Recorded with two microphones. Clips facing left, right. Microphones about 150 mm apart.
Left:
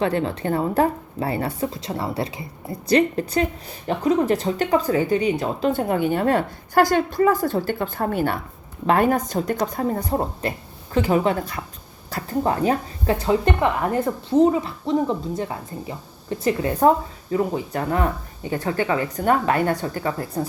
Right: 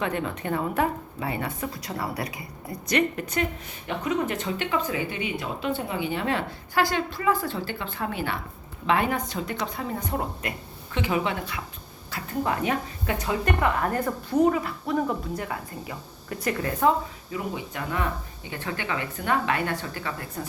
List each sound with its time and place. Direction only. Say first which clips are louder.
0.0 s a woman's voice: left 6 dB; 30° left (ahead or behind)
5.8 s a woman's voice: left 8 dB; 50° left (ahead or behind); by 16.7 s 25° left (ahead or behind)
17.3 s a woman's voice: left 9 dB; 40° left (ahead or behind)